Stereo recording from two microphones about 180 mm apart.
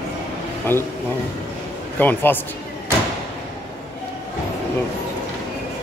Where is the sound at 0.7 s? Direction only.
10° left (ahead or behind).